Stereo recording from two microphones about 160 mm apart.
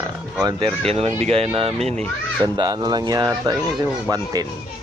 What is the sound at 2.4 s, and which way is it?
Speech, 25° right (ahead or behind).